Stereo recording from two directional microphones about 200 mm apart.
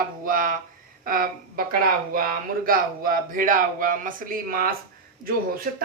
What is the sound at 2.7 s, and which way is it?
Speech, 45° right (ahead or behind).